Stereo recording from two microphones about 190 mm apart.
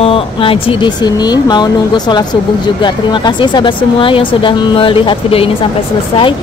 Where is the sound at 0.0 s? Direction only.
30° left (ahead or behind).